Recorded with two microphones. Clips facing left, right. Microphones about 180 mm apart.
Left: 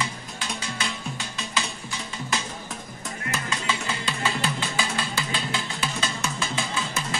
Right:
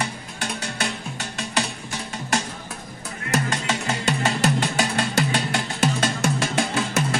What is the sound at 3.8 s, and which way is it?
Music, 70° right (ahead or behind).